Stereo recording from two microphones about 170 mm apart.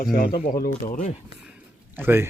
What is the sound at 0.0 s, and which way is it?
Speech, 60° left (ahead or behind).